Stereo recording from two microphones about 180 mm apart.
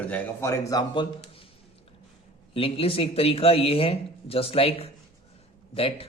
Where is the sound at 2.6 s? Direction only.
30° left (ahead or behind).